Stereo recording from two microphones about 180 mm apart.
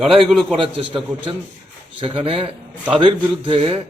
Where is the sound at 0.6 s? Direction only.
30° right (ahead or behind).